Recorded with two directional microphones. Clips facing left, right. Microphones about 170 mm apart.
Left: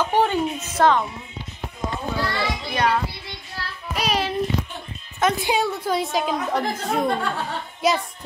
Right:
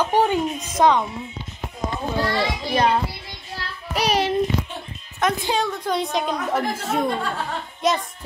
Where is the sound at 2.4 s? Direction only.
30° right (ahead or behind).